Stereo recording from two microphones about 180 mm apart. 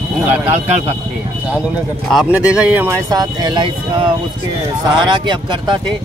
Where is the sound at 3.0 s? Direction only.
20° right (ahead or behind).